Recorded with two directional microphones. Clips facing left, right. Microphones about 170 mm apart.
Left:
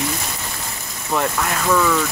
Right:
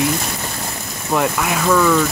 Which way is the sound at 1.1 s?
5° right (ahead or behind).